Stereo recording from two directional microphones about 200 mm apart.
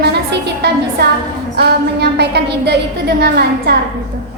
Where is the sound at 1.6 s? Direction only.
55° right (ahead or behind).